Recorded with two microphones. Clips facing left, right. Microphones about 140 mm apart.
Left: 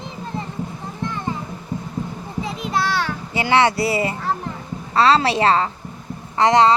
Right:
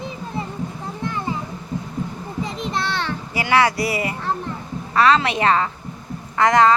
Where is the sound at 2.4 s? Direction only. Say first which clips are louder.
Left 4 dB; 5° left (ahead or behind).